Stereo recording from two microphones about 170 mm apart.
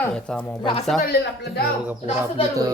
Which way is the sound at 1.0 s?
70° left (ahead or behind).